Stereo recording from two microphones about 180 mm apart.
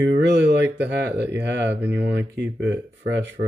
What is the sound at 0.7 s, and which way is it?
Speech, 70° right (ahead or behind).